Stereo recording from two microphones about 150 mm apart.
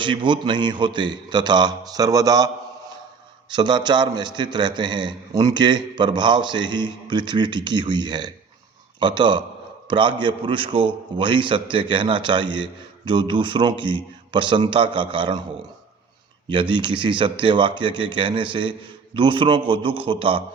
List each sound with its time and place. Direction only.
0.0 s a man's voice: 35° right (ahead or behind)
3.5 s a man's voice: 30° right (ahead or behind)
16.5 s a man's voice: 35° right (ahead or behind)